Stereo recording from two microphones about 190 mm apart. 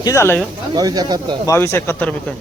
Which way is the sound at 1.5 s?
15° left (ahead or behind).